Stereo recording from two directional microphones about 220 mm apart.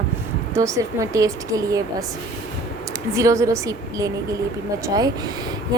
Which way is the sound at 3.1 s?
15° right (ahead or behind).